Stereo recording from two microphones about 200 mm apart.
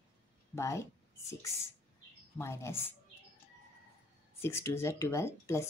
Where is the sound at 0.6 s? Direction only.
15° left (ahead or behind).